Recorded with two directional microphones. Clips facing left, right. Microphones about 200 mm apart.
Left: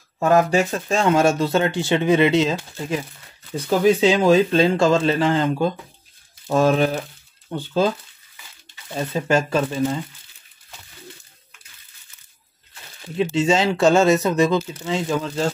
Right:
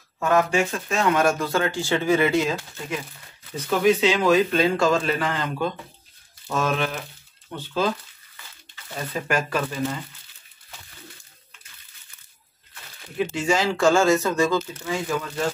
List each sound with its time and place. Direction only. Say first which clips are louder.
0.2 s speech: left 4 dB; 35° left (ahead or behind)
8.9 s speech: left 6 dB; 25° left (ahead or behind)
13.2 s speech: left 4 dB; 20° left (ahead or behind)